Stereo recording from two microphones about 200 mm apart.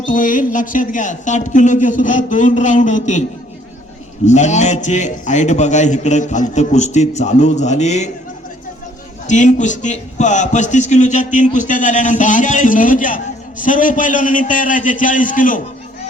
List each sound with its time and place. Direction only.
0.0 s a man's voice: 40° left (ahead or behind)
4.3 s a man's voice: 35° left (ahead or behind)
9.2 s a man's voice: 35° left (ahead or behind)